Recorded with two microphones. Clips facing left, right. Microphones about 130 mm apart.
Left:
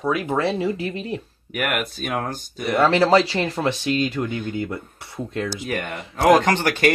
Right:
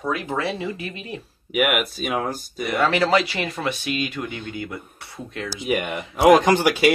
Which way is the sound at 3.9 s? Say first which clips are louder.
Left 4 dB; 15° right (ahead or behind).